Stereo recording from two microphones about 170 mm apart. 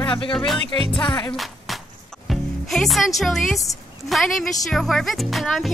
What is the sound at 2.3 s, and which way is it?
Speech, centre (ahead or behind).